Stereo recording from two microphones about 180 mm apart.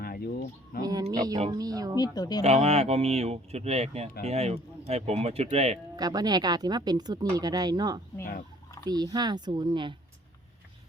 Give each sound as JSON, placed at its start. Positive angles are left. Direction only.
{"t": 0.0, "sound": "a sound", "side_deg": 55}
{"t": 0.8, "sound": "a sound", "side_deg": -20}
{"t": 1.1, "sound": "speech", "side_deg": -20}
{"t": 2.0, "sound": "speech", "side_deg": 20}
{"t": 2.4, "sound": "speech", "side_deg": -35}
{"t": 6.0, "sound": "speech", "side_deg": -20}
{"t": 8.2, "sound": "speech", "side_deg": 50}
{"t": 8.9, "sound": "speech", "side_deg": -20}